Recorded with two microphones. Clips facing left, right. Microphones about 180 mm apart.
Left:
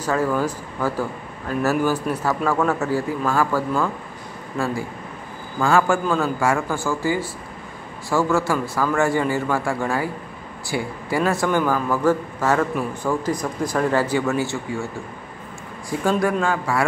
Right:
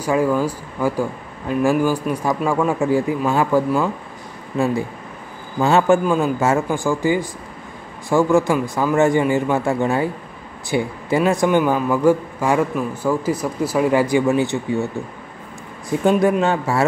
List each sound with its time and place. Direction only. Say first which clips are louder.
0.0 s a man's voice: right 3 dB; 10° right (ahead or behind)
16.0 s a man's voice: right 4 dB; 20° right (ahead or behind)